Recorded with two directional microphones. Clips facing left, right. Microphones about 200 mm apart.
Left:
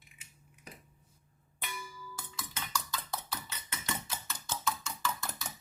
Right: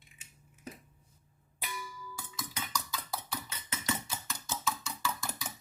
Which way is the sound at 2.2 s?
5° right (ahead or behind).